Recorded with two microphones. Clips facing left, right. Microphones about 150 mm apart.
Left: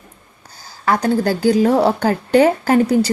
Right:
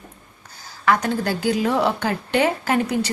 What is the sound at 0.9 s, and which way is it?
A woman's voice, 40° left (ahead or behind).